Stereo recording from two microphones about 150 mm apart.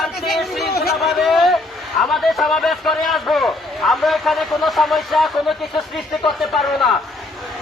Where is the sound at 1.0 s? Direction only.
Centre (ahead or behind).